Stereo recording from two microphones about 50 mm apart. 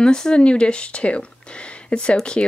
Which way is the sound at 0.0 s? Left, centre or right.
Centre.